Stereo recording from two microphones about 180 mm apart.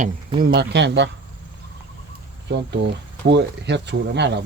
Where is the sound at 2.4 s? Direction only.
75° right (ahead or behind).